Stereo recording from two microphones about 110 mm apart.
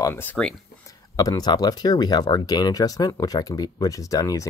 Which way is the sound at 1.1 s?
30° left (ahead or behind).